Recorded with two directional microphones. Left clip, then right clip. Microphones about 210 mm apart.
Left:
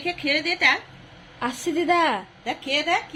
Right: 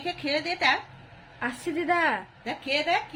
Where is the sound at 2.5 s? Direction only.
20° right (ahead or behind).